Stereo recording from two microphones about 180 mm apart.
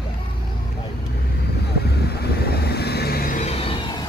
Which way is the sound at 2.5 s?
60° left (ahead or behind).